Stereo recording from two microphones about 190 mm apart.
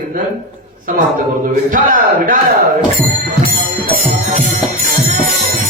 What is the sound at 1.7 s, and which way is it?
Speech, 45° right (ahead or behind).